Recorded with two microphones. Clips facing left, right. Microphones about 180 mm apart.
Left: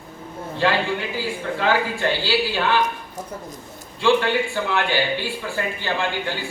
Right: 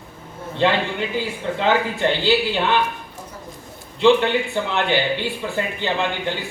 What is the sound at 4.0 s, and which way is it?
Speech, 20° right (ahead or behind).